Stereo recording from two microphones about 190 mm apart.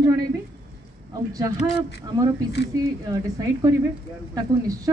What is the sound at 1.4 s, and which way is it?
Speech, 15° right (ahead or behind).